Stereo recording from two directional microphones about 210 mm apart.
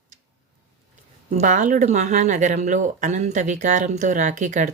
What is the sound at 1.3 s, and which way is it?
Speech, 35° right (ahead or behind).